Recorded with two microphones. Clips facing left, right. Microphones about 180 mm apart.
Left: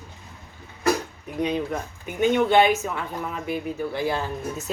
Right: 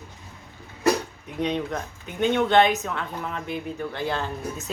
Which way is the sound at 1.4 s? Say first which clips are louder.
Left 1 dB; 5° left (ahead or behind).